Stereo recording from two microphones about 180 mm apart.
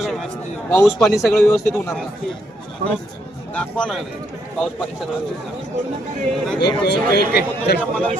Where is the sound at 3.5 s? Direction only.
5° left (ahead or behind).